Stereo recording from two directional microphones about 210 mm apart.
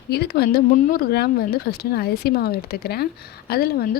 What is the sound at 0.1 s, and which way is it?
Speech, 50° left (ahead or behind).